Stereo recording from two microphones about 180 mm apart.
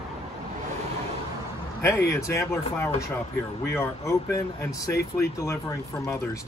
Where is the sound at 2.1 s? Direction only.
15° left (ahead or behind).